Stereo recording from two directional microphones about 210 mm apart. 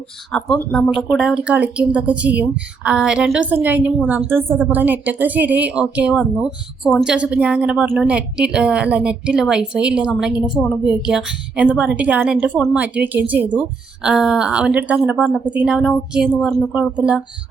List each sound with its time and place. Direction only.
0.3 s a woman's voice: 5° left (ahead or behind)